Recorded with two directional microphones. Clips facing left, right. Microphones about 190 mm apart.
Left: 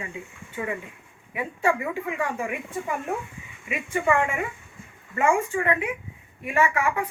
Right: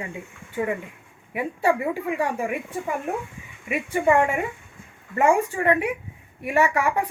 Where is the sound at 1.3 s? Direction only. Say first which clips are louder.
Right 3 dB; 35° right (ahead or behind).